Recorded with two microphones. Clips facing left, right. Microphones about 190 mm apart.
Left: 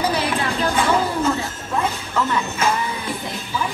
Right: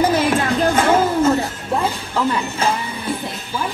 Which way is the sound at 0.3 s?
45° right (ahead or behind).